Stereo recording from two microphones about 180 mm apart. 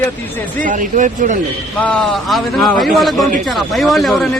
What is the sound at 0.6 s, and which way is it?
Speech, 45° right (ahead or behind).